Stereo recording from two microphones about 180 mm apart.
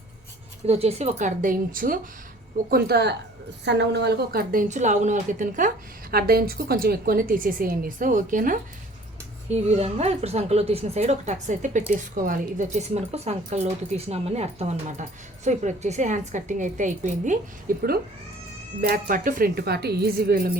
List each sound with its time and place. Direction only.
0.7 s a woman's voice: 35° right (ahead or behind); by 4.6 s 60° right (ahead or behind)
4.7 s a woman's voice: 40° right (ahead or behind)
9.5 s a woman's voice: 35° right (ahead or behind); by 20.5 s 55° right (ahead or behind)